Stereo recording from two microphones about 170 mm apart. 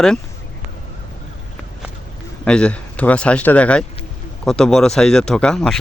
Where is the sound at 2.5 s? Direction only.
5° left (ahead or behind).